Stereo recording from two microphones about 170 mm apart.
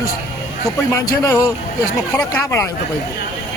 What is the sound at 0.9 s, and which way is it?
A man's voice, 20° left (ahead or behind).